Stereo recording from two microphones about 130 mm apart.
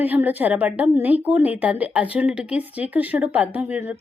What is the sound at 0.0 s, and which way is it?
A woman's voice, 15° right (ahead or behind).